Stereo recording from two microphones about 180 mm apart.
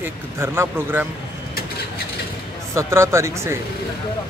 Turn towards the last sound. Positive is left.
turn(degrees=-15)  # may be behind; listen again after turning